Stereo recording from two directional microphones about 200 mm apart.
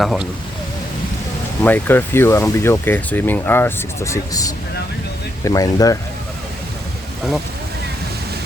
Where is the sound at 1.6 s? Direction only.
10° left (ahead or behind).